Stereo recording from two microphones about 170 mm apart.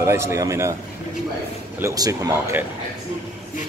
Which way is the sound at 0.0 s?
15° right (ahead or behind).